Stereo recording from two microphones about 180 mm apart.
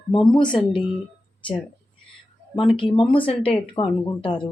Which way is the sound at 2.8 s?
30° left (ahead or behind).